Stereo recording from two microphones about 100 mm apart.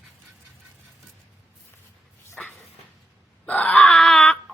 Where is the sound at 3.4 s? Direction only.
10° left (ahead or behind).